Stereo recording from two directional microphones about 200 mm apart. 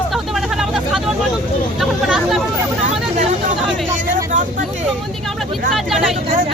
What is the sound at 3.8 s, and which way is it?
Vehicle, 40° right (ahead or behind).